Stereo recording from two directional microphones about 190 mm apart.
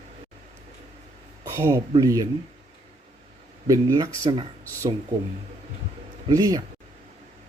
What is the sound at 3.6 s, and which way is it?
Speech, 20° right (ahead or behind).